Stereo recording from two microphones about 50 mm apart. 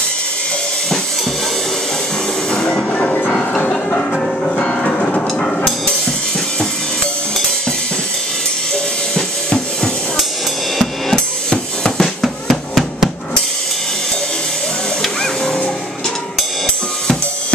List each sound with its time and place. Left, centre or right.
2.5 s train: centre
3.7 s music: centre
9.1 s drum kit: centre
11.5 s music: centre
12.2 s drum: centre
15.0 s printer: centre